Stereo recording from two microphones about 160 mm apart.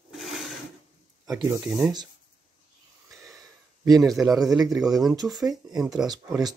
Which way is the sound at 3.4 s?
20° right (ahead or behind).